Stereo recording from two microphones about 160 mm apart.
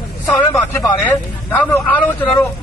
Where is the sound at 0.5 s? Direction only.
15° left (ahead or behind).